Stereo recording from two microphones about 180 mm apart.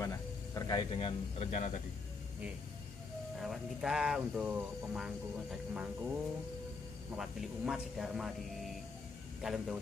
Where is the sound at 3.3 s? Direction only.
Centre (ahead or behind).